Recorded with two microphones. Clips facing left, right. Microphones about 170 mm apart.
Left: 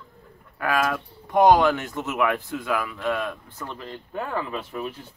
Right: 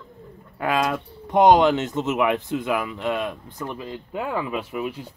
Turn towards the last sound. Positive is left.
turn(degrees=-10)  # may be behind; listen again after turning